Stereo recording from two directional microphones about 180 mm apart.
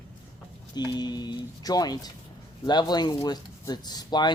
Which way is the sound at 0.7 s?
25° left (ahead or behind).